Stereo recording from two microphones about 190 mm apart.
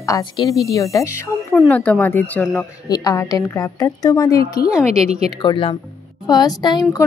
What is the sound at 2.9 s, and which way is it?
A woman's voice, 20° left (ahead or behind).